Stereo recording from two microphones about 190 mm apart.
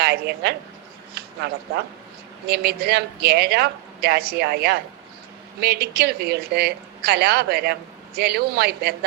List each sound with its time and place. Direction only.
0.0 s a woman's voice: 55° right (ahead or behind)